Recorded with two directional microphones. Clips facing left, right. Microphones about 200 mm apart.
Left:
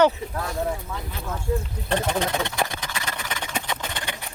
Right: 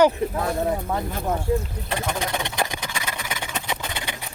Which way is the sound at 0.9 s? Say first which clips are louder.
Right 8 dB; 50° right (ahead or behind).